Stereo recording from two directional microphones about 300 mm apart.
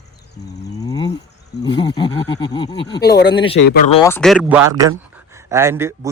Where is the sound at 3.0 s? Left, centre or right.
Left.